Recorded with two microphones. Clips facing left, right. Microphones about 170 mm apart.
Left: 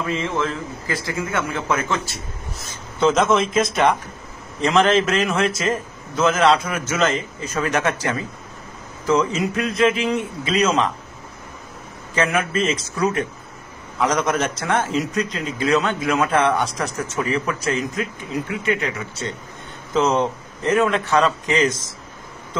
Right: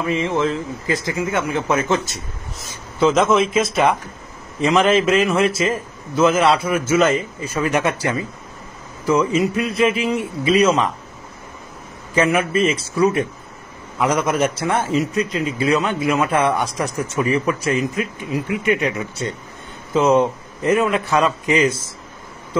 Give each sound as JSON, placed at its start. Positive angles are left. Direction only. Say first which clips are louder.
{"t": 0.0, "sound": "a man's voice", "louder": "right 4 dB", "side_deg": -15}
{"t": 2.1, "sound": "a man's voice", "louder": "even", "side_deg": 0}
{"t": 12.2, "sound": "a man's voice", "louder": "right 4 dB", "side_deg": -5}